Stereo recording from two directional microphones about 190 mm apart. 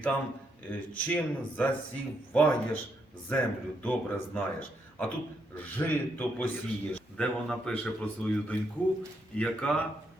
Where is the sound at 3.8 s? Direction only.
10° left (ahead or behind).